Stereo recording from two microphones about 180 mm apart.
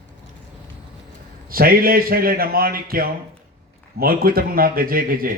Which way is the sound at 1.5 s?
55° right (ahead or behind).